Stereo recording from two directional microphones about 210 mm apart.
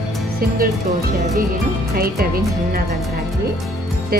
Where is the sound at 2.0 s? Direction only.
45° right (ahead or behind).